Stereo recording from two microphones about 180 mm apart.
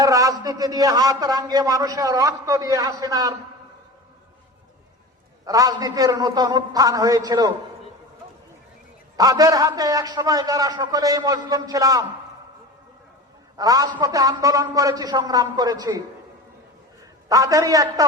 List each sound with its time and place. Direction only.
0.0 s a man's voice: 20° right (ahead or behind)
5.5 s a man's voice: 20° right (ahead or behind)
9.1 s a man's voice: 20° right (ahead or behind)
13.6 s a man's voice: 20° right (ahead or behind)
17.2 s a man's voice: 20° right (ahead or behind)